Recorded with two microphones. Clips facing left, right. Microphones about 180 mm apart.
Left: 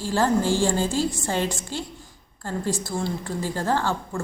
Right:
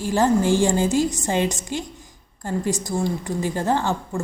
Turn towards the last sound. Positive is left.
turn(degrees=-20)  # may be behind; listen again after turning